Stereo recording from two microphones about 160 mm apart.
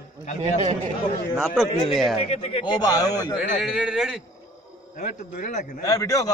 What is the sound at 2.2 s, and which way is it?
Speech, 40° left (ahead or behind).